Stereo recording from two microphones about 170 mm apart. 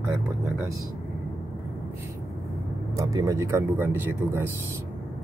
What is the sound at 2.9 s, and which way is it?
Speech, 20° right (ahead or behind).